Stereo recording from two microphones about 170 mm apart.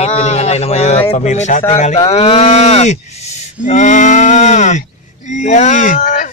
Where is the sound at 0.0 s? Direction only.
40° left (ahead or behind).